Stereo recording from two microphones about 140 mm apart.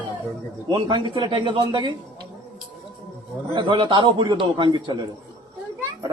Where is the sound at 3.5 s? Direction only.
35° right (ahead or behind).